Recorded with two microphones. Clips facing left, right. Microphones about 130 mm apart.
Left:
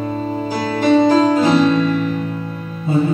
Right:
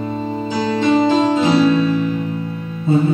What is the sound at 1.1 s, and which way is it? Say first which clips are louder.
Music: left 2 dB; 20° right (ahead or behind).